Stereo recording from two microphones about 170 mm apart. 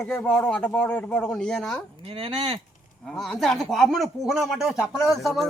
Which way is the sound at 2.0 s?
35° right (ahead or behind).